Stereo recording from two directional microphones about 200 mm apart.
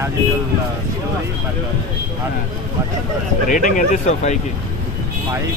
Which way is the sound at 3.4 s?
40° left (ahead or behind).